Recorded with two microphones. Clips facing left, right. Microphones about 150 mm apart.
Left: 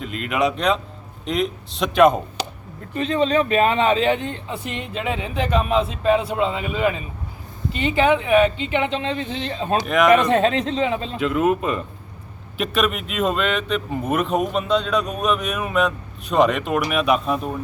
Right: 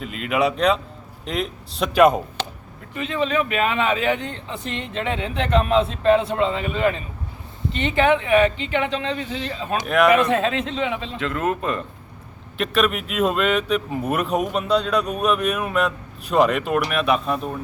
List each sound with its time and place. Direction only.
0.0 s speech: 5° right (ahead or behind)
2.9 s a man's voice: 35° left (ahead or behind)
4.7 s speech: 10° left (ahead or behind)
9.5 s a man's voice: 30° left (ahead or behind)
9.8 s speech: centre (ahead or behind)
10.3 s a man's voice: 35° left (ahead or behind)
11.2 s speech: 5° left (ahead or behind)